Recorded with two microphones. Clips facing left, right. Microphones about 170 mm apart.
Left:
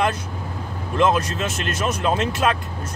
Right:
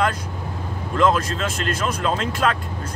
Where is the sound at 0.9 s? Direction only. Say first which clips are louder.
Even; 20° left (ahead or behind).